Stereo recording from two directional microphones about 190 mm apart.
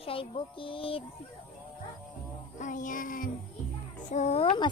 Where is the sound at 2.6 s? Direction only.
45° left (ahead or behind).